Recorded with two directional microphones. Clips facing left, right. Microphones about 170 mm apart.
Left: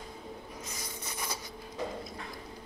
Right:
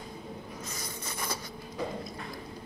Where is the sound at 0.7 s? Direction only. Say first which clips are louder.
Right 2 dB; 15° left (ahead or behind).